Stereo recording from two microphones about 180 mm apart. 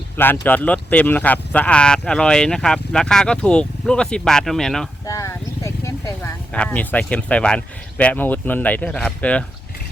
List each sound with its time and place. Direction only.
0.4 s speech: 10° left (ahead or behind)
5.0 s vehicle: 20° left (ahead or behind)
6.5 s speech: 10° left (ahead or behind)